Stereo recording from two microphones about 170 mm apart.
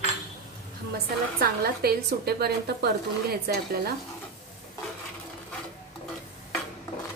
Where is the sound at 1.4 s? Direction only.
65° right (ahead or behind).